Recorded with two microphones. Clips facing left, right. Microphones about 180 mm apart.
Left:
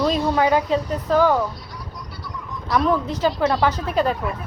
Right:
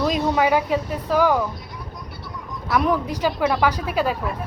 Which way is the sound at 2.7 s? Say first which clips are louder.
Left 1 dB; 10° right (ahead or behind).